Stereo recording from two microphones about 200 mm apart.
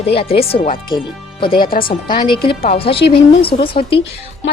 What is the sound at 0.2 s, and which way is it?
A woman's voice, 30° left (ahead or behind).